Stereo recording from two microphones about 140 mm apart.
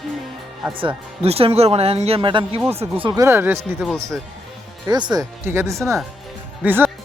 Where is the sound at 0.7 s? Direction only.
40° right (ahead or behind).